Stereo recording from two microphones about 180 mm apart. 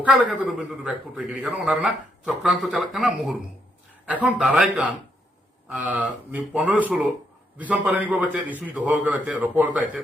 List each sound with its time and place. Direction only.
0.0 s a man's voice: 5° right (ahead or behind)